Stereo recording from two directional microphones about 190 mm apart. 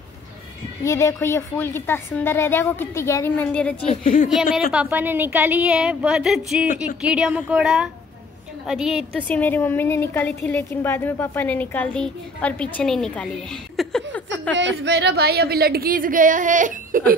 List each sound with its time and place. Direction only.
0.8 s a woman's voice: 15° left (ahead or behind)
3.8 s a woman's voice: 35° left (ahead or behind)
4.7 s a woman's voice: 10° right (ahead or behind); by 14.5 s 5° left (ahead or behind)
14.5 s a woman's voice: 70° right (ahead or behind); by 17.0 s 40° right (ahead or behind)